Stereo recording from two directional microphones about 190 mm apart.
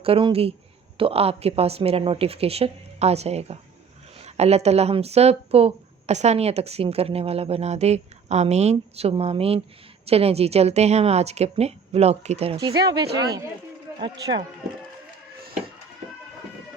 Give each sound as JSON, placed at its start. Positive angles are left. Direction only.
{"t": 0.0, "sound": "speech", "side_deg": -25}
{"t": 12.5, "sound": "speech", "side_deg": -20}